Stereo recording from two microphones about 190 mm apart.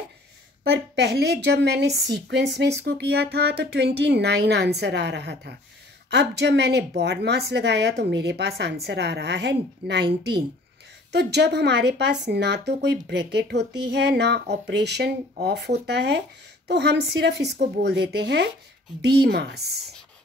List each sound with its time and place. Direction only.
0.7 s speech: 60° right (ahead or behind)
11.1 s speech: 60° right (ahead or behind)